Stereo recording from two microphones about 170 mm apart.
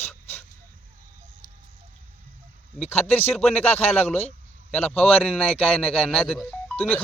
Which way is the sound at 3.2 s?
10° left (ahead or behind).